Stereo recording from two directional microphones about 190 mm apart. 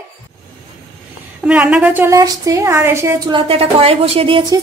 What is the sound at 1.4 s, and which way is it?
A woman's voice, 5° right (ahead or behind).